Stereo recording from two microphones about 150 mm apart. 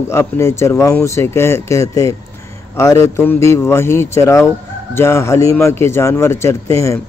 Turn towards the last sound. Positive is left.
turn(degrees=20)  # may be behind; listen again after turning